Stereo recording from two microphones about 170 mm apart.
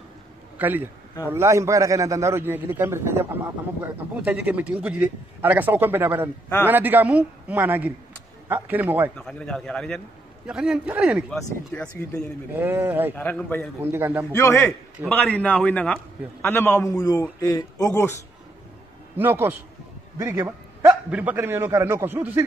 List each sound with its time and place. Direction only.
0.6 s a man's voice: 10° right (ahead or behind)
9.1 s a man's voice: 5° left (ahead or behind)
11.2 s a man's voice: 5° left (ahead or behind)
12.5 s a man's voice: 10° right (ahead or behind)
13.1 s a man's voice: 10° left (ahead or behind)
13.9 s a man's voice: 15° right (ahead or behind)
14.3 s a man's voice: 15° left (ahead or behind)
19.1 s a man's voice: 10° right (ahead or behind)